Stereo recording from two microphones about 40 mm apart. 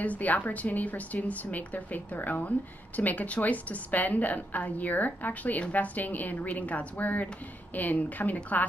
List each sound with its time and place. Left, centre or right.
0.0 s a woman's voice: left